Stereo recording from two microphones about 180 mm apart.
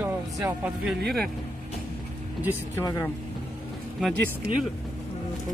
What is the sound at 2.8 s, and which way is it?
Speech, 15° left (ahead or behind).